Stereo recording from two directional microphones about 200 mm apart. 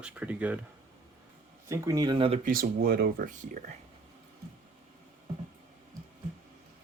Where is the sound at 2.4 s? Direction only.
45° right (ahead or behind).